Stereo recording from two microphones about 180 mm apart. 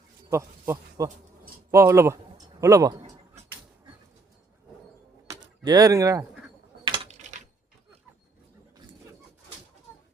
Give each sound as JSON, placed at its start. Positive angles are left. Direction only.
{"t": 0.3, "sound": "speech", "side_deg": -15}
{"t": 5.3, "sound": "a sound", "side_deg": -20}
{"t": 6.8, "sound": "typing", "side_deg": -25}
{"t": 7.1, "sound": "typing", "side_deg": -40}